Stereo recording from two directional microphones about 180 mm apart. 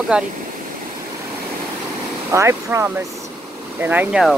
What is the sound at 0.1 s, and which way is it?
Speech, 5° right (ahead or behind).